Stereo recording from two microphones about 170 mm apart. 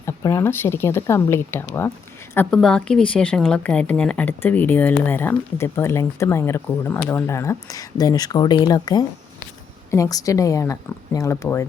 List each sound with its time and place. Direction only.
0.0 s speech: 20° left (ahead or behind)